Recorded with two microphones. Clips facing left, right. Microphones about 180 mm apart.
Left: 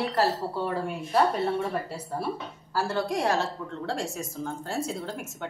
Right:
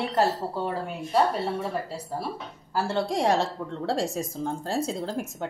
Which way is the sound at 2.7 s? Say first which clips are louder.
Right 1 dB; 25° right (ahead or behind).